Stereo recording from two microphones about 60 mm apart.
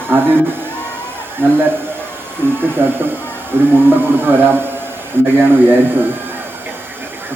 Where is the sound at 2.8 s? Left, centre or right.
Right.